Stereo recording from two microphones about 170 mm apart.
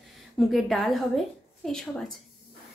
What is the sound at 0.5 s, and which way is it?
Speech, centre (ahead or behind).